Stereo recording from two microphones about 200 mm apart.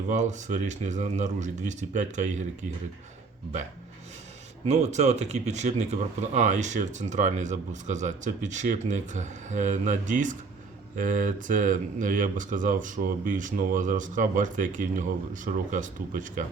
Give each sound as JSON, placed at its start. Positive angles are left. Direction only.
{"t": 0.1, "sound": "speech", "side_deg": -35}
{"t": 4.6, "sound": "speech", "side_deg": -35}